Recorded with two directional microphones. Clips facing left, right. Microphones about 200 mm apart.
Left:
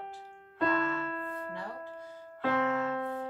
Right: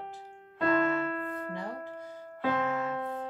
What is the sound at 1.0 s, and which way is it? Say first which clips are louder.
Music: right 4 dB; 75° right (ahead or behind).